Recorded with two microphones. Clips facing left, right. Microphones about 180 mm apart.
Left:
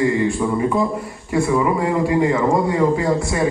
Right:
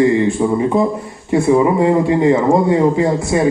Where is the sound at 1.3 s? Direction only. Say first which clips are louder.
Right 5 dB; 25° right (ahead or behind).